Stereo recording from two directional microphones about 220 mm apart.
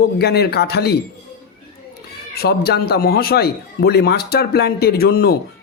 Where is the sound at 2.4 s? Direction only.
45° left (ahead or behind).